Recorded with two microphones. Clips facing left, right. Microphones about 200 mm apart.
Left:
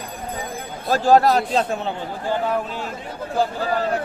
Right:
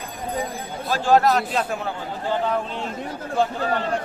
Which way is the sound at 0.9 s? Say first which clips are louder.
Left 3 dB; 40° left (ahead or behind).